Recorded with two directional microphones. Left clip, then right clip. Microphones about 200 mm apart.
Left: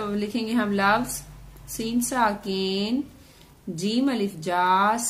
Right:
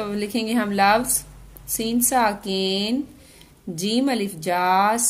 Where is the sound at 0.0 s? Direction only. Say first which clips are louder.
Right 3 dB; 30° right (ahead or behind).